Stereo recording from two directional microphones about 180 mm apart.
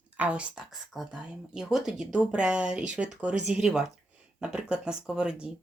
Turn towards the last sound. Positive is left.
turn(degrees=-5)  # may be behind; listen again after turning